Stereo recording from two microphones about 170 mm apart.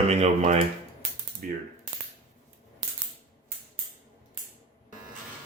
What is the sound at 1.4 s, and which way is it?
Ratchet, 55° right (ahead or behind).